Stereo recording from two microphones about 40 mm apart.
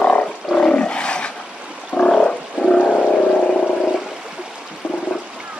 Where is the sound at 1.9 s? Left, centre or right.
Left.